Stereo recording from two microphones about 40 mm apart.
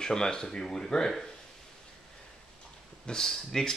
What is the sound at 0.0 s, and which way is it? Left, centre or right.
Speech, centre.